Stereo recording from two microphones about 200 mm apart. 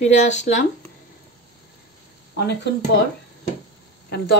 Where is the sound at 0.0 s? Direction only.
35° left (ahead or behind).